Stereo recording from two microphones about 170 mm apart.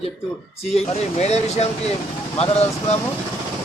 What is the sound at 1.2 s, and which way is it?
A man's voice, 40° left (ahead or behind).